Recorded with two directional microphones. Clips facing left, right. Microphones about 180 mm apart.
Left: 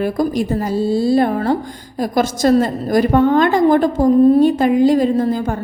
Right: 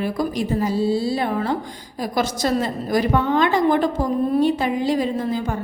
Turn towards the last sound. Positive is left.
turn(degrees=45)  # may be behind; listen again after turning